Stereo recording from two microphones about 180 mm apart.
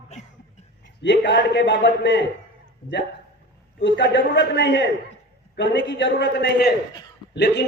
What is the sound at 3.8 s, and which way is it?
A man's voice, 80° left.